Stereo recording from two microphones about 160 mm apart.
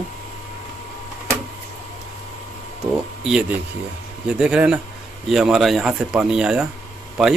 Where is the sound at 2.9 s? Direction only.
5° right (ahead or behind).